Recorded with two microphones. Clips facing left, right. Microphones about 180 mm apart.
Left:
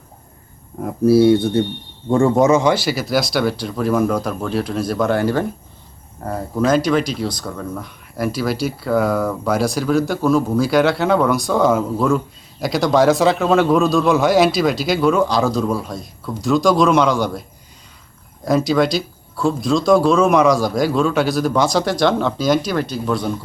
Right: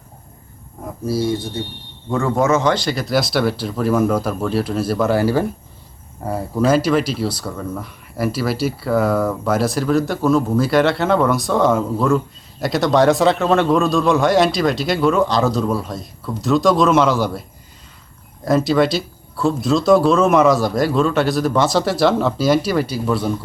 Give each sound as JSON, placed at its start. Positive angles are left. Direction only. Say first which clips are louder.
{"t": 1.0, "sound": "speech", "louder": "left 9 dB", "side_deg": 65}
{"t": 2.0, "sound": "a man's voice", "louder": "left 5 dB", "side_deg": 25}
{"t": 2.4, "sound": "speech", "louder": "left 2 dB", "side_deg": 15}
{"t": 18.4, "sound": "speech", "louder": "right 1 dB", "side_deg": 0}